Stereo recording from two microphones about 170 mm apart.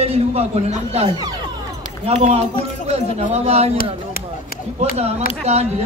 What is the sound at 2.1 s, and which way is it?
Speech, 40° right (ahead or behind).